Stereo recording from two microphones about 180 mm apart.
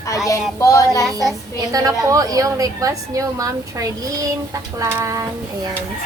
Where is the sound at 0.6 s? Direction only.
20° left (ahead or behind).